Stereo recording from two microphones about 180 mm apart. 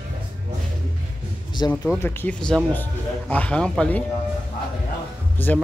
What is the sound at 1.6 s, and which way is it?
Speech, 20° left (ahead or behind).